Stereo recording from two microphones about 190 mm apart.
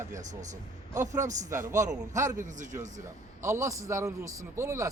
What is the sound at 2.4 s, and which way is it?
Speech, 40° right (ahead or behind).